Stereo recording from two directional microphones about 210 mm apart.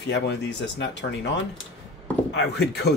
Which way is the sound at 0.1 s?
55° left (ahead or behind).